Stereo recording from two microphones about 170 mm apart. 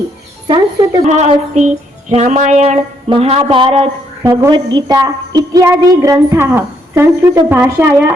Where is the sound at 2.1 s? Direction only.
40° right (ahead or behind).